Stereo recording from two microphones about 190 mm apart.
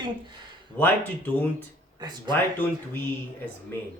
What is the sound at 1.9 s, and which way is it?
Speech, 20° right (ahead or behind).